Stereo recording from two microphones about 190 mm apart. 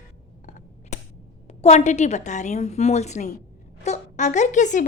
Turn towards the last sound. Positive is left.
turn(degrees=40)  # may be behind; listen again after turning